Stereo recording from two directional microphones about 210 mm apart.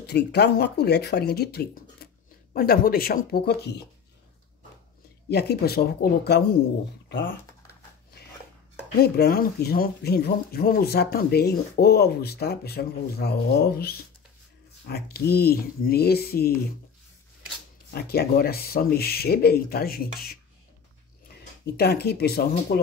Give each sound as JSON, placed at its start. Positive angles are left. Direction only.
{"t": 0.0, "sound": "speech", "side_deg": 50}
{"t": 5.3, "sound": "speech", "side_deg": 50}
{"t": 8.9, "sound": "speech", "side_deg": 50}
{"t": 17.9, "sound": "speech", "side_deg": 45}
{"t": 21.7, "sound": "speech", "side_deg": 50}